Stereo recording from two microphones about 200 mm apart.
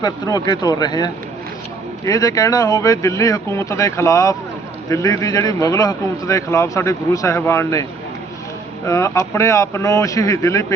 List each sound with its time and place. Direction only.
0.0 s a man's voice: 20° left (ahead or behind)
8.9 s a man's voice: 15° left (ahead or behind)